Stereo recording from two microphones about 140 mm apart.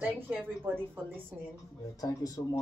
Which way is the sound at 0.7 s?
15° right (ahead or behind).